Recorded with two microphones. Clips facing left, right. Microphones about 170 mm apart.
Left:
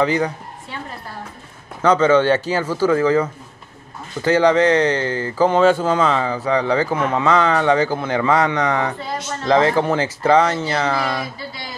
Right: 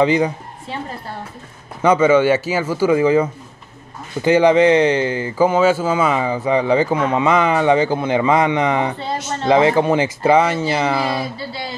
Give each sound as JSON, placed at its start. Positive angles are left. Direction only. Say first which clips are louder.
{"t": 0.0, "sound": "speech", "louder": "right 3 dB", "side_deg": -15}
{"t": 1.8, "sound": "speech", "louder": "right 1 dB", "side_deg": -10}
{"t": 11.1, "sound": "speech", "louder": "right 3 dB", "side_deg": -30}